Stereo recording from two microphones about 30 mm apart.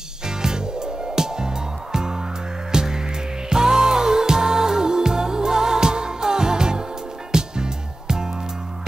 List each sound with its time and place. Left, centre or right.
0.3 s music: right